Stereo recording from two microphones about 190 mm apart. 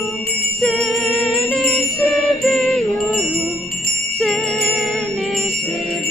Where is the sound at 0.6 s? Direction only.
5° left (ahead or behind).